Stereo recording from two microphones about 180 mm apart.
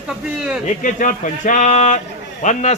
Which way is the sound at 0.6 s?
45° left (ahead or behind).